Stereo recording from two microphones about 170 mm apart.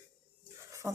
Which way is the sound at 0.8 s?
15° right (ahead or behind).